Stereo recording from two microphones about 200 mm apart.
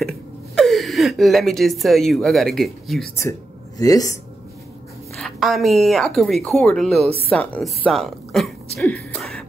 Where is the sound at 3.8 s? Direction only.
15° left (ahead or behind).